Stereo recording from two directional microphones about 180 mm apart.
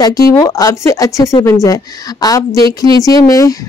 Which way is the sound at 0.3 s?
20° left (ahead or behind).